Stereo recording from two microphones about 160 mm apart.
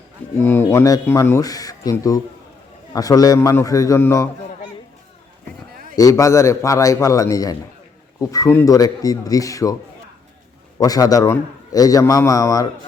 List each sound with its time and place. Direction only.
0.4 s a man's voice: 15° left (ahead or behind)
5.7 s a sound: 60° right (ahead or behind)
6.0 s a man's voice: 20° left (ahead or behind)
10.8 s a man's voice: 20° left (ahead or behind)